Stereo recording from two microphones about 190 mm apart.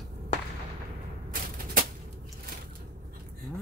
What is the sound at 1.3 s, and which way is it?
Music, 45° right (ahead or behind).